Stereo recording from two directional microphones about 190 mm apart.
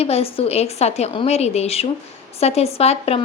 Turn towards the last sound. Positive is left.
turn(degrees=30)  # may be behind; listen again after turning